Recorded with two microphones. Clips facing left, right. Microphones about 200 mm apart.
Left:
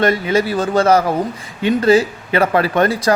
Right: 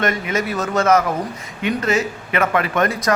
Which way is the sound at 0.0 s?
30° left (ahead or behind).